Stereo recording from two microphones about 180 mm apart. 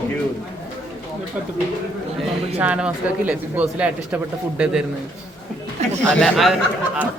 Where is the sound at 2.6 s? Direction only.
5° right (ahead or behind).